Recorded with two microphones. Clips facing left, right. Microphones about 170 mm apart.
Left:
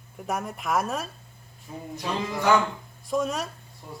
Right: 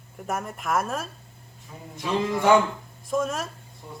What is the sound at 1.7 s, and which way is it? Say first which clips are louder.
Speech: left 5 dB; 30° left (ahead or behind).